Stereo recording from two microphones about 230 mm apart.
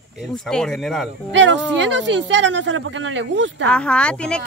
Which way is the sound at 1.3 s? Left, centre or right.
Right.